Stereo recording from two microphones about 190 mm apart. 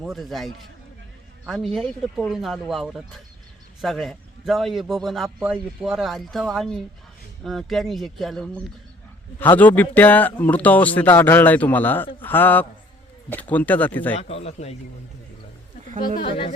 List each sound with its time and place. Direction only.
0.0 s a man's voice: centre (ahead or behind)
9.6 s speech: 10° left (ahead or behind)
14.2 s speech: 30° left (ahead or behind)
16.0 s a woman's voice: 50° left (ahead or behind)
16.2 s a woman's voice: 25° left (ahead or behind)